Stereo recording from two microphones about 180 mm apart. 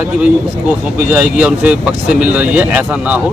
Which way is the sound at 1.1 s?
5° right (ahead or behind).